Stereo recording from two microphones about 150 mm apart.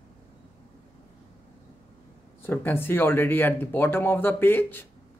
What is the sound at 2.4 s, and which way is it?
A man's voice, 15° left (ahead or behind).